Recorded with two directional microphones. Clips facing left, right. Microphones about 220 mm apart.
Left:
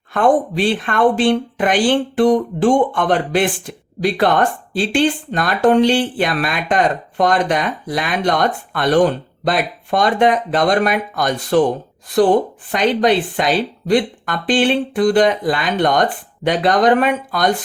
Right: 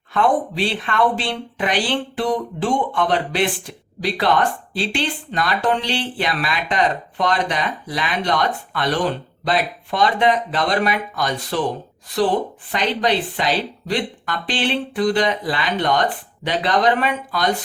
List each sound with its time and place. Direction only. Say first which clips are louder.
0.1 s speech: left 4 dB; 50° left (ahead or behind)